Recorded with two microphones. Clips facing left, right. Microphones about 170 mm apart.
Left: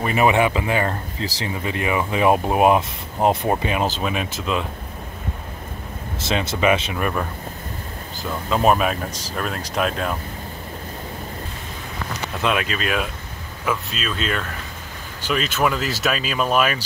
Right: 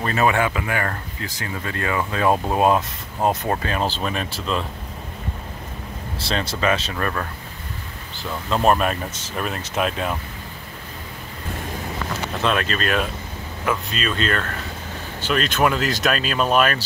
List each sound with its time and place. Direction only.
0.0 s speech: 15° left (ahead or behind)
6.6 s speech: 15° left (ahead or behind)
8.5 s speech: 5° left (ahead or behind)
12.4 s speech: 10° left (ahead or behind)